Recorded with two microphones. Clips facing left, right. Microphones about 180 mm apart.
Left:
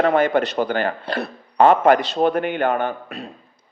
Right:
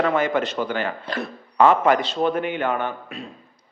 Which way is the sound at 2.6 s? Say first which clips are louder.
Left 3 dB; 40° left (ahead or behind).